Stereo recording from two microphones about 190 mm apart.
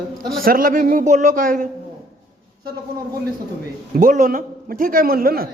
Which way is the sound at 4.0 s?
45° right (ahead or behind).